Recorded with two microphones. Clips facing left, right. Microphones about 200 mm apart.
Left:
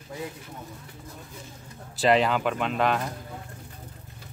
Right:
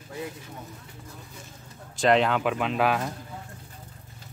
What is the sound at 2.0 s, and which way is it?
Speech, centre (ahead or behind).